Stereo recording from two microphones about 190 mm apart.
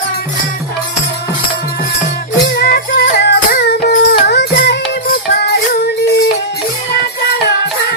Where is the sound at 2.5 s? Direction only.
55° left (ahead or behind).